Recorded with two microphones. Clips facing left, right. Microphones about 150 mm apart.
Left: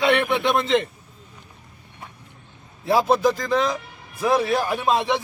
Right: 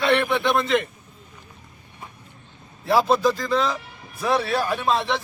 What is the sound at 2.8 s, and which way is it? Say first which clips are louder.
Speech: even; 20° left (ahead or behind).